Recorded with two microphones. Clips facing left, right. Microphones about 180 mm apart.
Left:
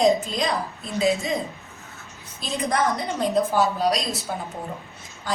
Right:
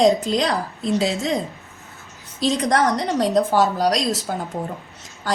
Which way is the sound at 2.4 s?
85° right.